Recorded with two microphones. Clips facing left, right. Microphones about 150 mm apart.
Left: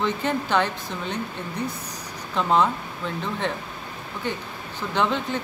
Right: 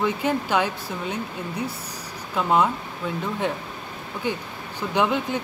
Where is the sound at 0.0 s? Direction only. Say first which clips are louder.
Right 1 dB; 10° right (ahead or behind).